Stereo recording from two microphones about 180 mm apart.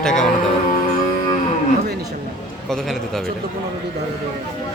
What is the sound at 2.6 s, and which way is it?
Speech, centre (ahead or behind).